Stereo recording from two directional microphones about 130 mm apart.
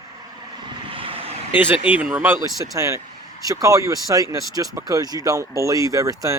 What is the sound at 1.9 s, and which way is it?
Speech, 10° right (ahead or behind).